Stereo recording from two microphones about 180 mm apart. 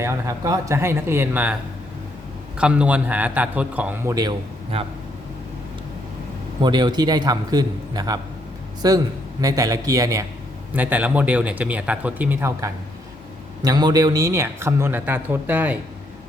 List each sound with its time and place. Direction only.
0.0 s a man's voice: 15° right (ahead or behind)
2.6 s a man's voice: 5° right (ahead or behind)
4.1 s a man's voice: 20° right (ahead or behind)
6.6 s a man's voice: 25° right (ahead or behind)